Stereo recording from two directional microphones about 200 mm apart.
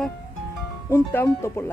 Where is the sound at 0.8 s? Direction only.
10° left (ahead or behind).